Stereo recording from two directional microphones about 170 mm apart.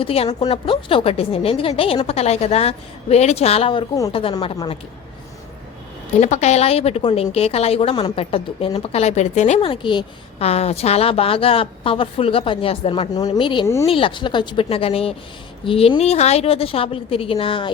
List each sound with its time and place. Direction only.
0.0 s a woman's voice: 35° left (ahead or behind)
6.1 s a woman's voice: 45° left (ahead or behind)